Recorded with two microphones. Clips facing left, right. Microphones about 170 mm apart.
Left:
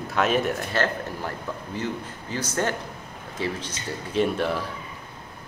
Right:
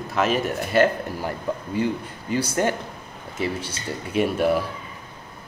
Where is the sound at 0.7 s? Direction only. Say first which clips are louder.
Right 8 dB; 10° right (ahead or behind).